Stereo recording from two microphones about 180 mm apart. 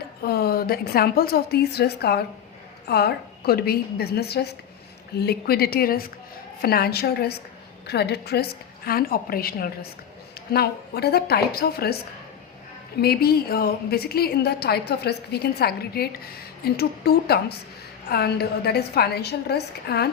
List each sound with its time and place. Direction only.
0.2 s a woman's voice: 60° left (ahead or behind)
13.0 s a woman's voice: 60° left (ahead or behind)